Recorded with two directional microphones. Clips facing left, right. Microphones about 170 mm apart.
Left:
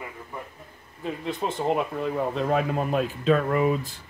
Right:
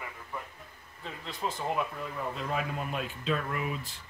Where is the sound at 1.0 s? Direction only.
25° left (ahead or behind).